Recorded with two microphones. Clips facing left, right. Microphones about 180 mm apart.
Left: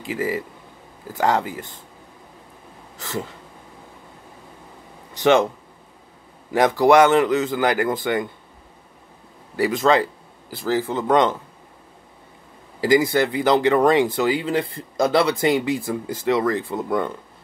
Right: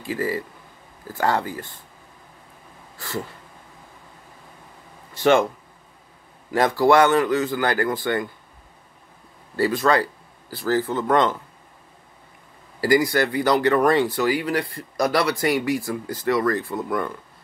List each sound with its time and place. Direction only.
0.0 s speech: 20° left (ahead or behind)
3.0 s a sound: 20° left (ahead or behind)
5.1 s speech: 20° left (ahead or behind)
6.5 s speech: 20° left (ahead or behind)
9.6 s speech: 20° left (ahead or behind)
12.8 s speech: 20° left (ahead or behind)